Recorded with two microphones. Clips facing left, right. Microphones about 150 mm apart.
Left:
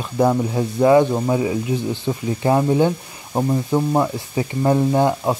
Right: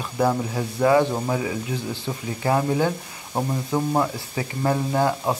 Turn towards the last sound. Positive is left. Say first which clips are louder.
# left 4 dB
turn(degrees=20)  # may be behind; listen again after turning